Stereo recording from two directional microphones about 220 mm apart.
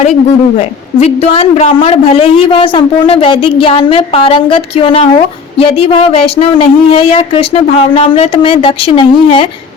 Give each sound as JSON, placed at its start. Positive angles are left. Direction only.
{"t": 0.9, "sound": "a woman's voice", "side_deg": 30}